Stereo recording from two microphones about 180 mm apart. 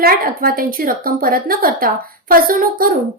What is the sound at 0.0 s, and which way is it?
A woman's voice, 55° right (ahead or behind).